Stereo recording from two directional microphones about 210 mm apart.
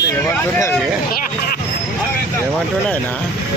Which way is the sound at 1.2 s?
50° left (ahead or behind).